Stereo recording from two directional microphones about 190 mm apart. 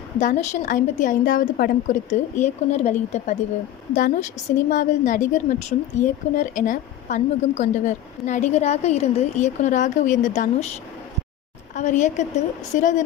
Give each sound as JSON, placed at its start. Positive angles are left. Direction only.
{"t": 0.2, "sound": "a woman's voice", "side_deg": 40}
{"t": 11.7, "sound": "a woman's voice", "side_deg": 40}